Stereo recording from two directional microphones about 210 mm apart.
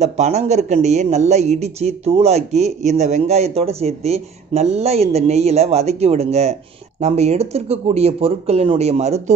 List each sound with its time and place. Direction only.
0.0 s speech: 30° right (ahead or behind)